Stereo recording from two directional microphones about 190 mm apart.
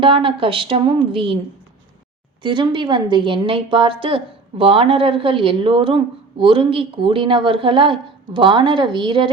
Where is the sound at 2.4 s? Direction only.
25° right (ahead or behind).